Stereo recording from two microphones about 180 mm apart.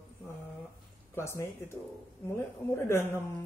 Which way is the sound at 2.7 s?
15° left (ahead or behind).